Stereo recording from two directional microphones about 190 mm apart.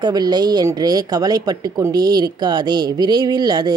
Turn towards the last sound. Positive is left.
turn(degrees=-20)  # may be behind; listen again after turning